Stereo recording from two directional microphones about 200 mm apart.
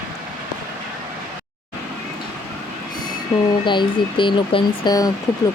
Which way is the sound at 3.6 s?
25° left (ahead or behind).